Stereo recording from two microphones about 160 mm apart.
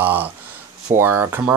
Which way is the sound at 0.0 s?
10° right (ahead or behind).